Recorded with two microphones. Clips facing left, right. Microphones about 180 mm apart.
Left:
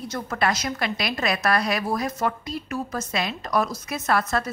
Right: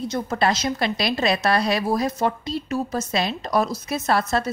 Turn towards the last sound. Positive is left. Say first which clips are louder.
# right 2 dB
turn(degrees=-30)  # may be behind; listen again after turning